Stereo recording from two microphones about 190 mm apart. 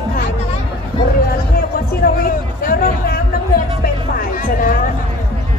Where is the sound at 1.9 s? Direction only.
50° left (ahead or behind).